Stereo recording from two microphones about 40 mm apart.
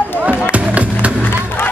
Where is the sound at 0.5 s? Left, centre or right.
Right.